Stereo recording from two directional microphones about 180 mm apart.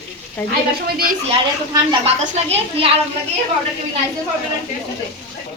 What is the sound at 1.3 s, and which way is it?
A woman's voice, 30° right (ahead or behind).